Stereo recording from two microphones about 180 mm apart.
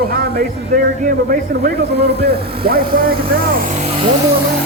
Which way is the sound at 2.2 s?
55° right (ahead or behind).